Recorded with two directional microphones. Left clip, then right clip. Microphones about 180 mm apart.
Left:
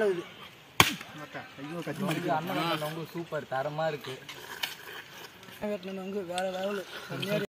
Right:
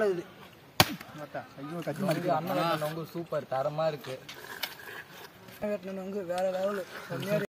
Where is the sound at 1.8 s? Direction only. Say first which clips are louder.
Right 2 dB; 35° right (ahead or behind).